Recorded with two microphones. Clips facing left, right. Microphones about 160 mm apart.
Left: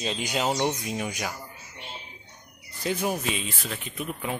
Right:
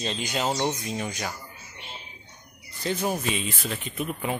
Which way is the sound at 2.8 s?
5° left (ahead or behind).